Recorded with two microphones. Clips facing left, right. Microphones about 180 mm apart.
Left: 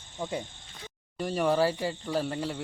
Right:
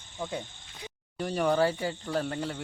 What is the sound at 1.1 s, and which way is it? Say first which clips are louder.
Speech: even; centre (ahead or behind).